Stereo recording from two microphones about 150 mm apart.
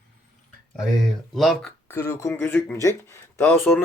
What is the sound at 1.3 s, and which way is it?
Speech, centre (ahead or behind).